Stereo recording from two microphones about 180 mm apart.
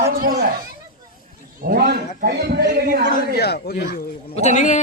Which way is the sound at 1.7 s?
60° right (ahead or behind).